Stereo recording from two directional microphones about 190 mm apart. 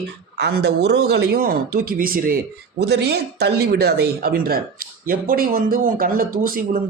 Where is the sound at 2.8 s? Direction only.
60° right (ahead or behind).